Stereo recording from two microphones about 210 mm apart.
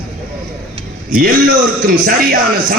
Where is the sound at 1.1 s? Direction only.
45° right (ahead or behind).